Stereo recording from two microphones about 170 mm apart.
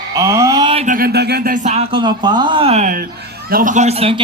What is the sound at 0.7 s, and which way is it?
Speech, 40° right (ahead or behind).